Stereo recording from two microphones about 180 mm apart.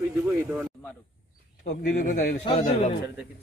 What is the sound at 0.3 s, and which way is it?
Speech, 10° right (ahead or behind).